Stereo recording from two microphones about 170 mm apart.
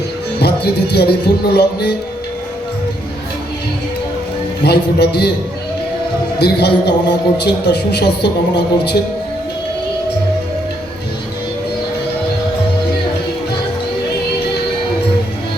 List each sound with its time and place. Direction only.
0.3 s music: 75° left (ahead or behind)
4.6 s music: 75° left (ahead or behind)
6.4 s a man's voice: 80° left